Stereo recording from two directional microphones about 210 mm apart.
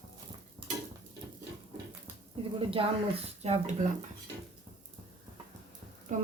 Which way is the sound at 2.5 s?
25° right (ahead or behind).